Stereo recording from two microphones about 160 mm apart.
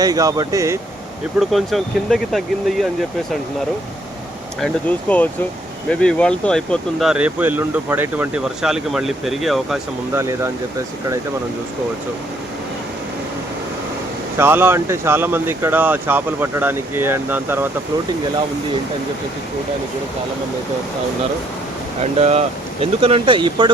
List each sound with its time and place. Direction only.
0.0 s speech: 20° right (ahead or behind)
1.4 s speech: centre (ahead or behind)
4.6 s speech: 10° left (ahead or behind); by 8.3 s 15° right (ahead or behind)
8.4 s speech: 5° right (ahead or behind)
10.2 s speech: 15° right (ahead or behind)
14.3 s speech: 15° right (ahead or behind)
22.0 s speech: 40° right (ahead or behind)